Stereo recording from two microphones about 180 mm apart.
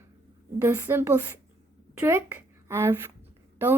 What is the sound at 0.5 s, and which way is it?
A woman's voice, 15° right (ahead or behind).